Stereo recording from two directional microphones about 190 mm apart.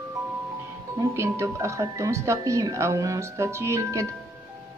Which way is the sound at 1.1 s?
15° right (ahead or behind).